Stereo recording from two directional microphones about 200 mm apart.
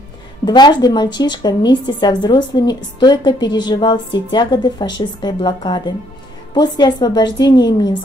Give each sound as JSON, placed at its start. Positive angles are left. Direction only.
{"t": 0.5, "sound": "a woman's voice", "side_deg": 20}